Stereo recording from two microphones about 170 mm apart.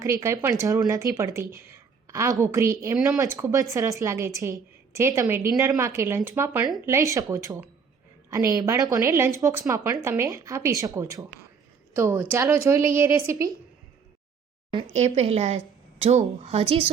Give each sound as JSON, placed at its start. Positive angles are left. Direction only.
{"t": 0.0, "sound": "a woman's voice", "side_deg": -15}
{"t": 14.9, "sound": "a woman's voice", "side_deg": -40}